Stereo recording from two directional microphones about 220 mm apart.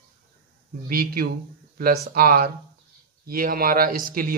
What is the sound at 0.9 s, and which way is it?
Speech, 40° right (ahead or behind).